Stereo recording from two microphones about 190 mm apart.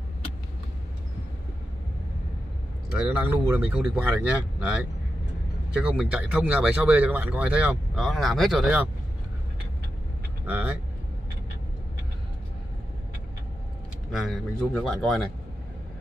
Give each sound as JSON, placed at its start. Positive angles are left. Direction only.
{"t": 2.9, "sound": "speech", "side_deg": -10}
{"t": 5.8, "sound": "speech", "side_deg": -5}
{"t": 10.4, "sound": "speech", "side_deg": -10}
{"t": 14.1, "sound": "speech", "side_deg": 0}